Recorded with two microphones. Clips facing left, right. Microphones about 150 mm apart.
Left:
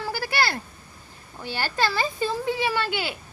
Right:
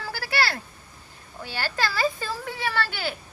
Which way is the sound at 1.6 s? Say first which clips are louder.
Even; 20° left (ahead or behind).